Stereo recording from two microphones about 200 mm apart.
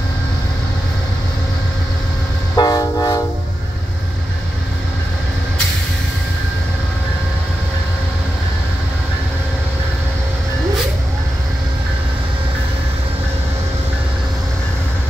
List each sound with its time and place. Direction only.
2.5 s train: 20° left (ahead or behind)